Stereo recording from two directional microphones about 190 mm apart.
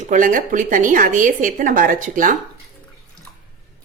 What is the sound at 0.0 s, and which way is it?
A woman's voice, 40° right (ahead or behind).